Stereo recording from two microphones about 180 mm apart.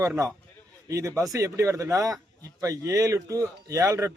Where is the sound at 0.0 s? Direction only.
15° right (ahead or behind).